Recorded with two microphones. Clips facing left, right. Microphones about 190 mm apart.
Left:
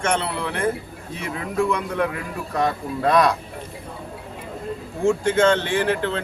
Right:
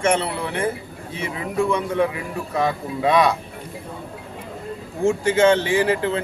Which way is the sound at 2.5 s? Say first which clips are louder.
Even; centre (ahead or behind).